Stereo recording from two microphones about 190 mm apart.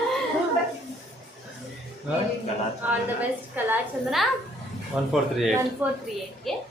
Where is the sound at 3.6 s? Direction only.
Centre (ahead or behind).